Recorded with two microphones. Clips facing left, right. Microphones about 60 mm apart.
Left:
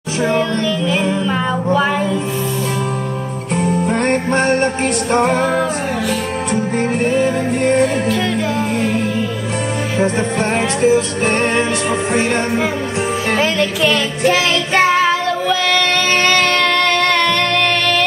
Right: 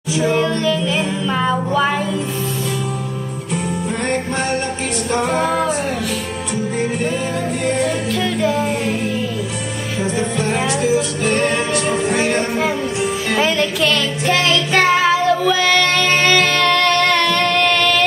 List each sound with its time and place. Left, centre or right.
0.3 s music: centre
3.5 s music: left
6.5 s music: left
8.1 s music: centre
9.9 s music: left
13.4 s music: centre
13.8 s child singing: left
15.0 s music: centre